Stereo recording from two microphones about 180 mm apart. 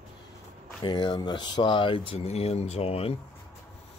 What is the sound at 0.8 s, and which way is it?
Speech, 25° left (ahead or behind).